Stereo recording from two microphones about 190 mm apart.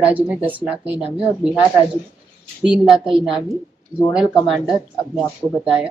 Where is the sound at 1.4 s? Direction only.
5° right (ahead or behind).